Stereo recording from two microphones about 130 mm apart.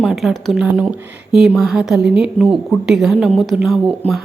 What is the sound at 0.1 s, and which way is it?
A woman's voice, centre (ahead or behind).